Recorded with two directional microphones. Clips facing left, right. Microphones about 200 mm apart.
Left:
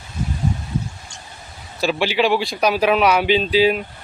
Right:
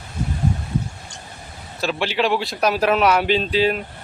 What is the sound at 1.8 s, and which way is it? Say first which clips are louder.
Speech: left 3 dB; 5° left (ahead or behind).